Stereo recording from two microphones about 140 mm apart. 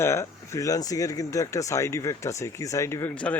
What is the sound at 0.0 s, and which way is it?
Speech, 20° left (ahead or behind).